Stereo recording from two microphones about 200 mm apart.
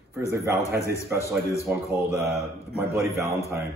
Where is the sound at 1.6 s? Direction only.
15° right (ahead or behind).